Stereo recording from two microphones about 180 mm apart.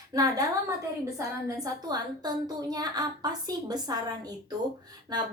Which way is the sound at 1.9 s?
20° right (ahead or behind).